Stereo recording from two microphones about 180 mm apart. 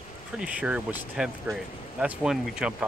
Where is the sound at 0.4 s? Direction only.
5° right (ahead or behind).